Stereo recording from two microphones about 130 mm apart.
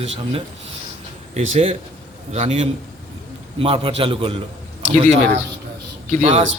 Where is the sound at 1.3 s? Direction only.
65° right (ahead or behind); by 4.4 s 45° right (ahead or behind).